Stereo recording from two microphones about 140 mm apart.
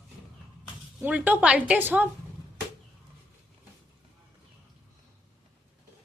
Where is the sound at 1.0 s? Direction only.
10° right (ahead or behind).